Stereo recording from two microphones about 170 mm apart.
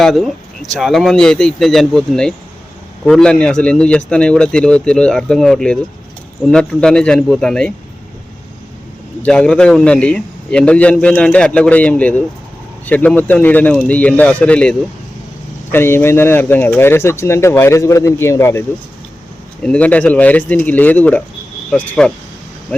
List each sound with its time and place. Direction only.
0.0 s speech: centre (ahead or behind)
9.2 s a man's voice: 5° left (ahead or behind)
19.6 s a man's voice: 5° left (ahead or behind)